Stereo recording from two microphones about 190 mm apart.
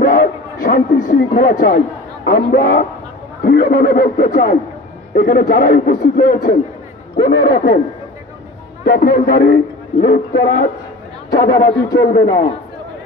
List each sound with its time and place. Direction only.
0.0 s a sound: 50° left (ahead or behind)
1.0 s a man's voice: 45° left (ahead or behind)
7.2 s a man's voice: 55° left (ahead or behind)
8.8 s a man's voice: 55° left (ahead or behind)
11.5 s speech: 20° left (ahead or behind)
12.0 s a man's voice: 55° left (ahead or behind)
12.3 s speech: 25° left (ahead or behind)